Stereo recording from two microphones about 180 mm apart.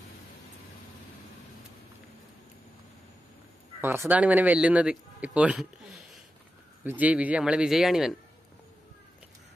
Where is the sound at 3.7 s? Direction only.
10° right (ahead or behind).